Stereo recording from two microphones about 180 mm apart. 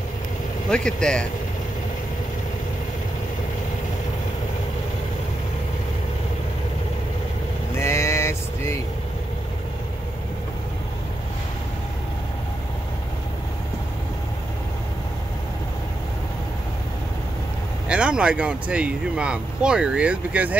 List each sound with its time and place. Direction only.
0.7 s speech: 5° left (ahead or behind)
7.8 s vehicle: 15° left (ahead or behind)
17.8 s speech: 5° right (ahead or behind)